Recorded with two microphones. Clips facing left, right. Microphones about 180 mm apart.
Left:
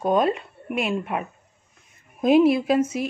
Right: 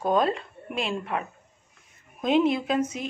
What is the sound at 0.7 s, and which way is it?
Speech, 30° right (ahead or behind).